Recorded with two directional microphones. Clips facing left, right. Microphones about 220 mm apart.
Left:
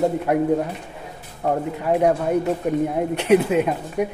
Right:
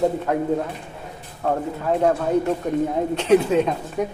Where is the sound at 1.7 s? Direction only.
15° left (ahead or behind).